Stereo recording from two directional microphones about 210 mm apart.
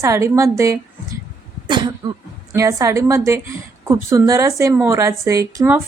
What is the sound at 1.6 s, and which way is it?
Cough, 20° right (ahead or behind).